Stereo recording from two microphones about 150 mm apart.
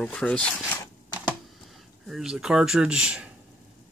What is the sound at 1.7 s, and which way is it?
Speech, centre (ahead or behind).